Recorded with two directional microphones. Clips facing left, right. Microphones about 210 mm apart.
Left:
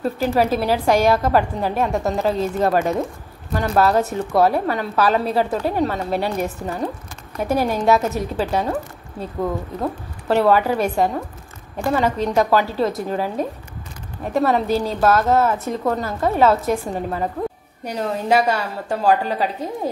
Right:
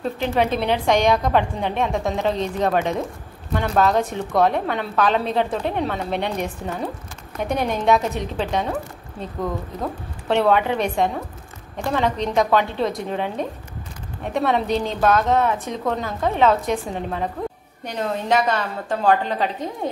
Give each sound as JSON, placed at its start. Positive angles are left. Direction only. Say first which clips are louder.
{"t": 0.0, "sound": "a woman's voice", "louder": "left 2 dB", "side_deg": 5}
{"t": 9.8, "sound": "a woman's voice", "louder": "left 3 dB", "side_deg": 5}